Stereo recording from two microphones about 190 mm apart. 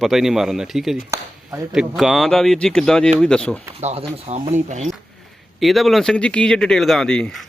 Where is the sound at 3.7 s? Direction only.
35° right (ahead or behind).